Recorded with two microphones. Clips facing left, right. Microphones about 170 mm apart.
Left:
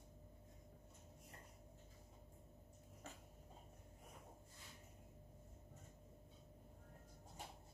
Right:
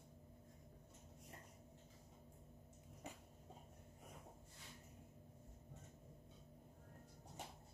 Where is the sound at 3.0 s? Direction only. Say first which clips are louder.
Right 3 dB; 15° right (ahead or behind).